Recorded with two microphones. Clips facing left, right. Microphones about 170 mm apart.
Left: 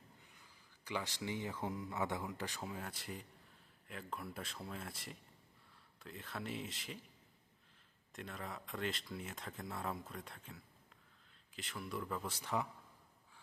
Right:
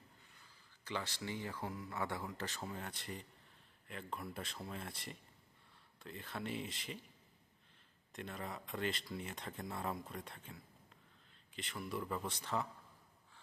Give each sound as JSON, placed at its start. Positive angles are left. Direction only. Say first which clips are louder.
{"t": 0.3, "sound": "speech", "louder": "left 1 dB", "side_deg": 15}
{"t": 8.1, "sound": "speech", "louder": "right 1 dB", "side_deg": 0}